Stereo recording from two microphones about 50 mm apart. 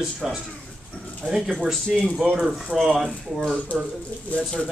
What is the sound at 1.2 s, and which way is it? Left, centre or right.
Speech, right.